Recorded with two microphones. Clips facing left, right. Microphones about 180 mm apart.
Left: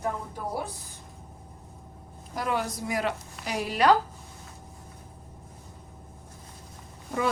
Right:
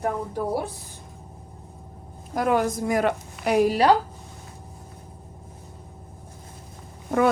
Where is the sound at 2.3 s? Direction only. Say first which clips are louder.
Right 7 dB; 50° right (ahead or behind).